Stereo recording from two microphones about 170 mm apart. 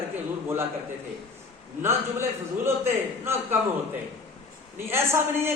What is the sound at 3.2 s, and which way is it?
Speech, 15° right (ahead or behind).